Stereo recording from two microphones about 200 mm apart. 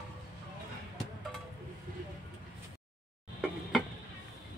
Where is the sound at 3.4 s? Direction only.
Centre (ahead or behind).